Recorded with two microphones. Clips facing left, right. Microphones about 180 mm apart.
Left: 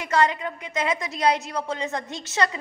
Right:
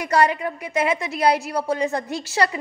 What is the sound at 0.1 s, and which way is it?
A woman's voice, 30° right (ahead or behind).